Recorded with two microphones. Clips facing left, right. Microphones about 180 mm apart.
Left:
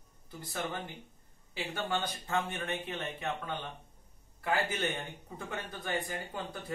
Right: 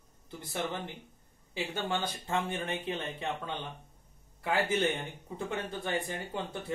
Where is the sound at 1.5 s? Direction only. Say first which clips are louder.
Right 1 dB; 25° right (ahead or behind).